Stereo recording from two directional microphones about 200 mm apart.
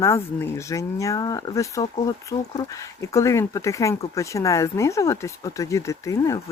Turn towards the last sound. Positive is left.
turn(degrees=15)  # may be behind; listen again after turning